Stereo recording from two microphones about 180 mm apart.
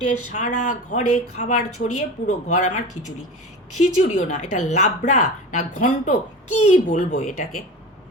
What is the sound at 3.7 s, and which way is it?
A woman's voice, 40° left (ahead or behind).